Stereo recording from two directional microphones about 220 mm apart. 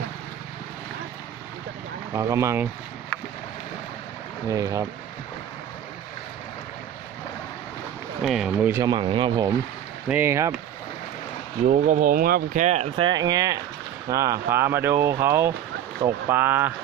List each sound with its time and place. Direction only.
2.1 s speech: 15° right (ahead or behind)
4.4 s speech: 15° right (ahead or behind)
8.2 s speech: centre (ahead or behind); by 9.5 s 20° right (ahead or behind)
10.1 s speech: 10° right (ahead or behind)
11.6 s speech: 35° right (ahead or behind); by 16.7 s 10° right (ahead or behind)